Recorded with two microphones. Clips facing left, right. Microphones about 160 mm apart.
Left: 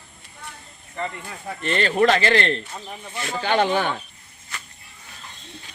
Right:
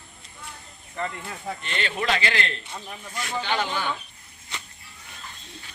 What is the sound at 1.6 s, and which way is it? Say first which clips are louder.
Speech: left 13 dB; 40° left (ahead or behind).